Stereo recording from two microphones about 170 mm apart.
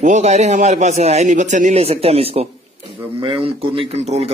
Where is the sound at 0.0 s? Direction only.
45° right (ahead or behind).